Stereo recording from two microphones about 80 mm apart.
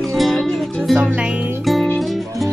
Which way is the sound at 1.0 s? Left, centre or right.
Centre.